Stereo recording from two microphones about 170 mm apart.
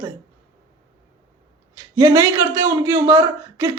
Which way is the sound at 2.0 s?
20° right (ahead or behind).